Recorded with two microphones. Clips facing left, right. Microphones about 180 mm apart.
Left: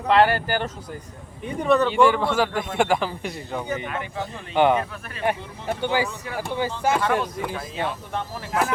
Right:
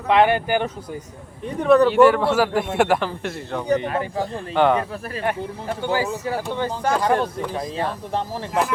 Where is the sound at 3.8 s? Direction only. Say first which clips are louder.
Right 6 dB; 35° right (ahead or behind).